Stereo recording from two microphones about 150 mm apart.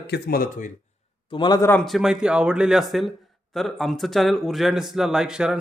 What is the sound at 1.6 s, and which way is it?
Speech, 15° left (ahead or behind).